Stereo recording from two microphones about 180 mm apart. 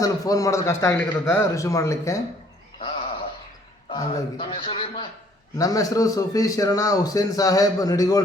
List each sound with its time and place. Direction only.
0.0 s a man's voice: 20° left (ahead or behind)
3.8 s a man's voice: 30° left (ahead or behind)